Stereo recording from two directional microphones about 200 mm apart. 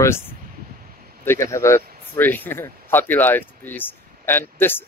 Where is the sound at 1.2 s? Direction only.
15° left (ahead or behind).